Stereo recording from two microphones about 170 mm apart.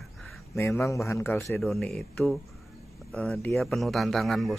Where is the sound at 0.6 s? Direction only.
15° left (ahead or behind).